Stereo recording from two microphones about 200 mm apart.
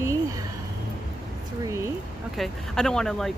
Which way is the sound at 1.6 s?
15° right (ahead or behind).